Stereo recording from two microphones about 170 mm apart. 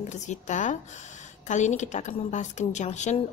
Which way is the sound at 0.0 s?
45° left (ahead or behind).